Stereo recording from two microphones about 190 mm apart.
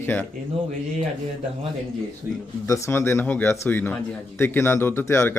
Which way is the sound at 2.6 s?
15° left (ahead or behind).